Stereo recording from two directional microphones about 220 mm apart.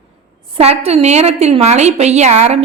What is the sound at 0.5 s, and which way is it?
A woman's voice, 25° right (ahead or behind).